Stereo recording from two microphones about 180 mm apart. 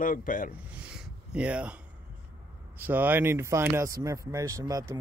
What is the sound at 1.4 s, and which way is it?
Speech, 5° right (ahead or behind).